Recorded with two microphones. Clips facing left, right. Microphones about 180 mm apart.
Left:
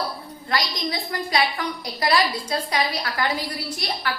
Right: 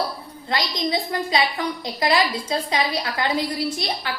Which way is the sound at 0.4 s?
20° right (ahead or behind).